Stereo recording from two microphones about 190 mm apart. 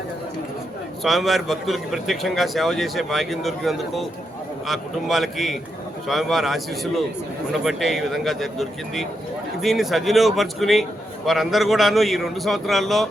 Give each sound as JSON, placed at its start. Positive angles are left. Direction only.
{"t": 1.0, "sound": "a man's voice", "side_deg": 0}